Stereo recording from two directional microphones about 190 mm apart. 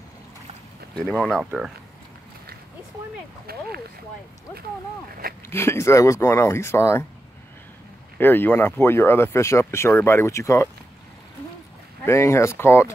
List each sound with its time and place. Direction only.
0.9 s speech: 5° left (ahead or behind)
3.5 s speech: 50° right (ahead or behind)
5.5 s speech: 15° left (ahead or behind)
8.2 s speech: 10° left (ahead or behind)
12.0 s speech: 15° left (ahead or behind)